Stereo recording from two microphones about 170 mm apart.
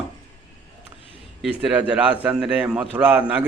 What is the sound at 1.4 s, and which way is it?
A man's voice, 5° right (ahead or behind).